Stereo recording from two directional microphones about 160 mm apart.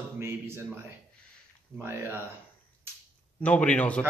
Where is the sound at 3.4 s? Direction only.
10° left (ahead or behind).